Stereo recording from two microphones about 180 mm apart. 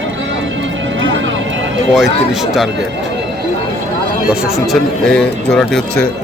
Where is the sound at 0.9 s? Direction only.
90° right.